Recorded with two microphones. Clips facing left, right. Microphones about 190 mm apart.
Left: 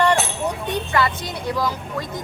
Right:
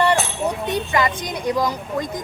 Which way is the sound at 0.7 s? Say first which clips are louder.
Left 1 dB; 15° right (ahead or behind).